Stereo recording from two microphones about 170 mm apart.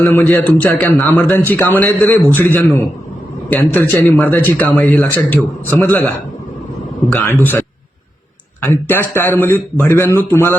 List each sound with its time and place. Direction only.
0.0 s speech: 10° left (ahead or behind)
7.1 s speech: 10° left (ahead or behind)
8.6 s speech: 15° left (ahead or behind)